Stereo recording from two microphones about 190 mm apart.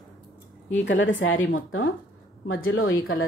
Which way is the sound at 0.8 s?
75° left (ahead or behind).